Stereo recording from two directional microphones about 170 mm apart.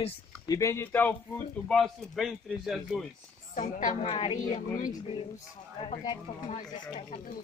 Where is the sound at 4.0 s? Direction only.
35° left (ahead or behind).